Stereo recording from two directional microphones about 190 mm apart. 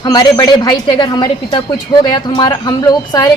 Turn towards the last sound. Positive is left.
turn(degrees=20)  # may be behind; listen again after turning